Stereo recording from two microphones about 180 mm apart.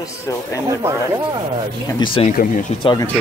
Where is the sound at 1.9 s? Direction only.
30° left (ahead or behind).